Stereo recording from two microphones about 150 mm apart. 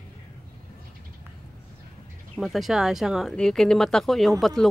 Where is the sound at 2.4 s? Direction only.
Centre (ahead or behind).